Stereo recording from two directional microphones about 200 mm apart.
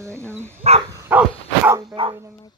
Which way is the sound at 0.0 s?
15° right (ahead or behind).